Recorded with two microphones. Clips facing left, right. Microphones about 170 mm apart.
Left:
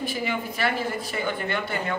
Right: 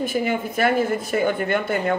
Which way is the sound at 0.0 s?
50° right (ahead or behind).